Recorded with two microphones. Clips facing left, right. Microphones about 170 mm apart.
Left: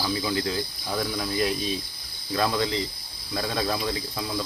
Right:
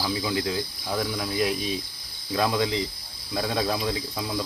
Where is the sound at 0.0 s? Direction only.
5° right (ahead or behind).